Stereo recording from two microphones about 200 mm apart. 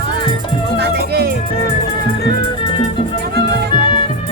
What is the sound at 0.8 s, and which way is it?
Music, 50° right (ahead or behind).